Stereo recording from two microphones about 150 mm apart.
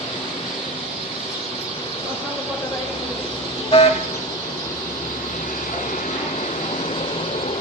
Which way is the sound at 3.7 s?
40° left (ahead or behind).